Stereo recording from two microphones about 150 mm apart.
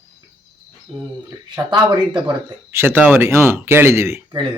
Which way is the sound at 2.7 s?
15° right (ahead or behind).